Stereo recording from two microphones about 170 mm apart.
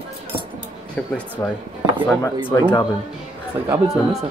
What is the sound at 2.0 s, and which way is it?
Speech, 10° left (ahead or behind).